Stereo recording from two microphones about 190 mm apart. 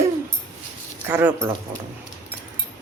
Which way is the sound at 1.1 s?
10° right (ahead or behind).